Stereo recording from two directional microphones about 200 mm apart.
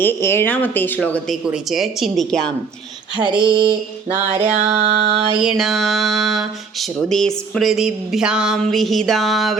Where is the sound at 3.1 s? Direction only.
25° right (ahead or behind).